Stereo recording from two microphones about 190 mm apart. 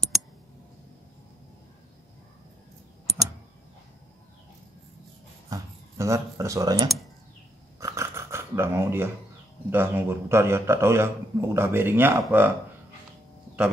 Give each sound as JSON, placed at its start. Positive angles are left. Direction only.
{"t": 5.5, "sound": "speech", "side_deg": -15}
{"t": 7.8, "sound": "dog", "side_deg": -15}
{"t": 9.7, "sound": "a man's voice", "side_deg": -10}